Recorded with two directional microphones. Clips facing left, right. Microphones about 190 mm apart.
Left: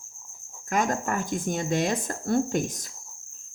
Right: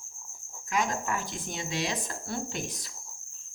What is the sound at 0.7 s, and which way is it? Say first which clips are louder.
A woman's voice: left 4 dB; 50° left (ahead or behind).